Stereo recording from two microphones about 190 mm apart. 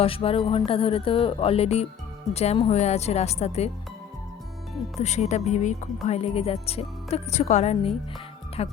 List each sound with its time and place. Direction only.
0.0 s speech: 30° left (ahead or behind)
4.9 s speech: 35° left (ahead or behind)